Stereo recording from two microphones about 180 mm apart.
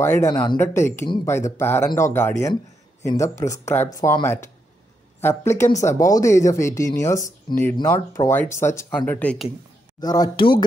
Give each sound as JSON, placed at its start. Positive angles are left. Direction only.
{"t": 0.0, "sound": "speech", "side_deg": 15}
{"t": 0.6, "sound": "speech", "side_deg": 15}
{"t": 9.9, "sound": "speech", "side_deg": 20}